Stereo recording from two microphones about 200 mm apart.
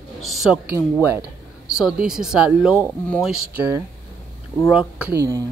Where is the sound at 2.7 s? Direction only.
10° left (ahead or behind).